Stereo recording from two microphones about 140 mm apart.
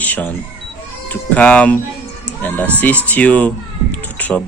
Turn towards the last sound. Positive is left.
turn(degrees=10)  # may be behind; listen again after turning